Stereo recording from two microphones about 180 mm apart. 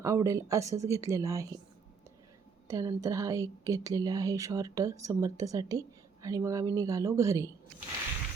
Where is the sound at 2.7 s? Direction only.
20° right (ahead or behind).